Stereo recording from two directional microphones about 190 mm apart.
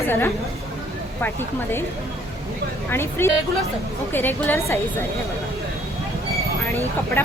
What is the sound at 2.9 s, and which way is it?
Speech, 10° left (ahead or behind).